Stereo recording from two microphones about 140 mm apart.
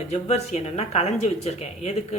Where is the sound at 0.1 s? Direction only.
50° left (ahead or behind).